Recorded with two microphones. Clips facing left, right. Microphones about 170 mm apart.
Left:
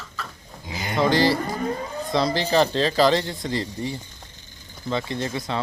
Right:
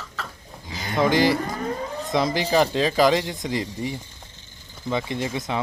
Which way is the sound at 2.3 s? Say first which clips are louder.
Even; 10° right (ahead or behind).